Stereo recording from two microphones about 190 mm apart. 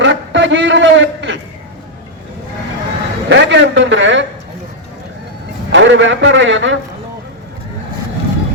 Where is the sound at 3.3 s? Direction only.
70° right (ahead or behind).